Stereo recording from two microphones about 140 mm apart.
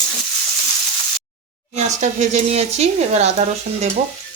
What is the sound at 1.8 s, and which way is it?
Speech, 55° right (ahead or behind).